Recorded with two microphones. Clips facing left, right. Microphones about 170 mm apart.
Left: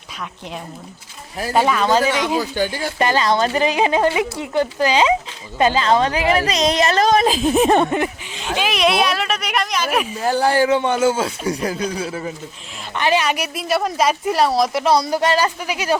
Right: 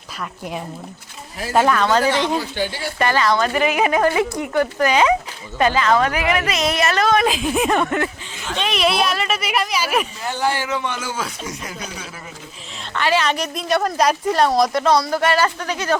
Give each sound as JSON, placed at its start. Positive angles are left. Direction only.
{"t": 1.5, "sound": "a woman's voice", "side_deg": 10}
{"t": 6.6, "sound": "a woman's voice", "side_deg": 20}
{"t": 6.8, "sound": "speech", "side_deg": 35}
{"t": 8.5, "sound": "a woman's voice", "side_deg": 0}
{"t": 10.2, "sound": "speech", "side_deg": 35}
{"t": 12.9, "sound": "a woman's voice", "side_deg": 15}
{"t": 14.9, "sound": "speech", "side_deg": 20}